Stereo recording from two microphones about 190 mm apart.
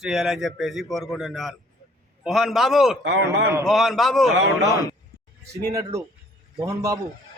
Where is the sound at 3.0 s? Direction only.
65° right (ahead or behind).